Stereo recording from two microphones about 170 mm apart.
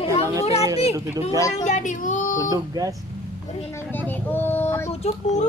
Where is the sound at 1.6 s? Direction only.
45° left (ahead or behind).